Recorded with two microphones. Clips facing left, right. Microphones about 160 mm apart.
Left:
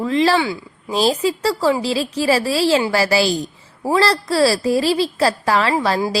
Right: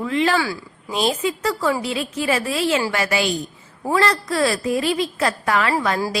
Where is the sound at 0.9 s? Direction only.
35° left (ahead or behind).